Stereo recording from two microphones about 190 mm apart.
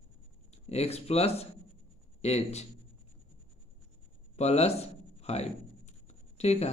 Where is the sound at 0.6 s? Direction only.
35° left (ahead or behind).